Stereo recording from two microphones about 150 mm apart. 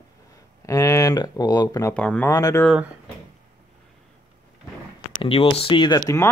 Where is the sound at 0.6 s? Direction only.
20° left (ahead or behind).